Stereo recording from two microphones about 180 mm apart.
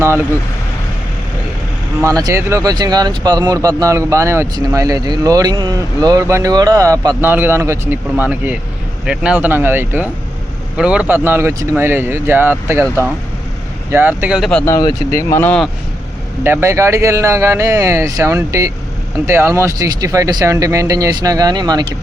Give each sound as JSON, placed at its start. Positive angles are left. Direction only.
{"t": 2.0, "sound": "speech", "side_deg": -20}
{"t": 13.9, "sound": "speech", "side_deg": -10}
{"t": 14.6, "sound": "speech", "side_deg": 20}
{"t": 16.4, "sound": "speech", "side_deg": -15}